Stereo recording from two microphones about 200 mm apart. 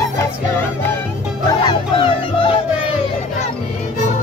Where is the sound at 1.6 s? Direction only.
25° left (ahead or behind).